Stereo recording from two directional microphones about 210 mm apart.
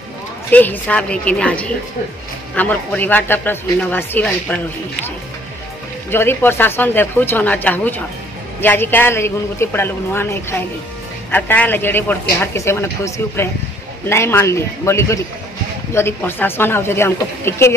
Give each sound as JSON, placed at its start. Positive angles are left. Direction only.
{"t": 0.5, "sound": "a woman's voice", "side_deg": 10}
{"t": 6.0, "sound": "a man's voice", "side_deg": 10}